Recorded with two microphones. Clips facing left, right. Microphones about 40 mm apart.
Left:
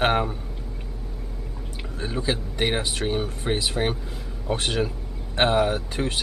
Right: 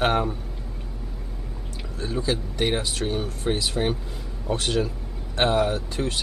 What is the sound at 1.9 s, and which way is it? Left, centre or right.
Speech, left.